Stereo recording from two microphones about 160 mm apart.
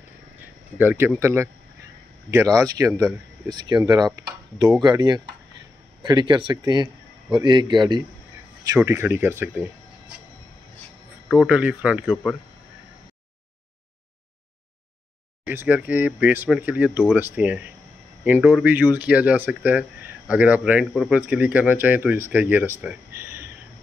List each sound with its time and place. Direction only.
0.7 s speech: 15° right (ahead or behind)
8.7 s speech: 15° right (ahead or behind)
11.2 s speech: 5° right (ahead or behind)
15.4 s speech: 10° right (ahead or behind)
22.8 s a sound: 10° right (ahead or behind)